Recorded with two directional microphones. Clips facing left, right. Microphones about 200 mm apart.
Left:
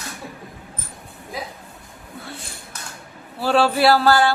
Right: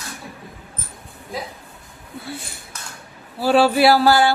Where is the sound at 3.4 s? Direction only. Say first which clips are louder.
Right 3 dB; 10° right (ahead or behind).